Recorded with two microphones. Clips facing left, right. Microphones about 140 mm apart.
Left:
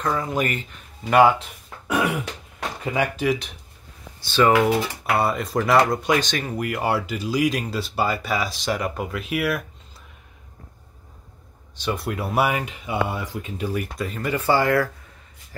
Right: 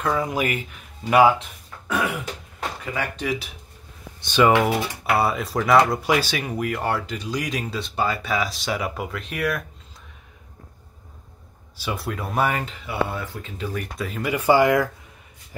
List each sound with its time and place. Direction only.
0.0 s speech: 5° right (ahead or behind)
2.8 s speech: 20° left (ahead or behind)
3.2 s speech: centre (ahead or behind)
4.2 s speech: 15° right (ahead or behind)
5.0 s speech: centre (ahead or behind)
11.7 s speech: 5° right (ahead or behind); by 13.8 s 15° left (ahead or behind)
13.9 s speech: centre (ahead or behind)